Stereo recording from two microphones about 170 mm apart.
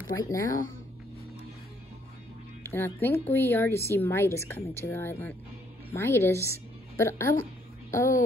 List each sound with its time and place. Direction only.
0.2 s speech: 20° left (ahead or behind)
2.6 s a woman's voice: 15° left (ahead or behind)